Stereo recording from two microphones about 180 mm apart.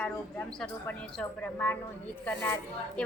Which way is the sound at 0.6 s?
10° left (ahead or behind).